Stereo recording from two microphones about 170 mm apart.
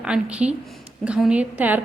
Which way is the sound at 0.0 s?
5° right (ahead or behind).